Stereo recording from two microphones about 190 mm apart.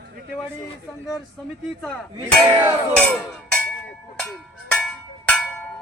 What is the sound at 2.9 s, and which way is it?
Music, 5° left (ahead or behind).